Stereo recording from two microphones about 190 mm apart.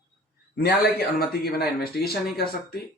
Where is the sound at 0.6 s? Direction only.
55° left (ahead or behind).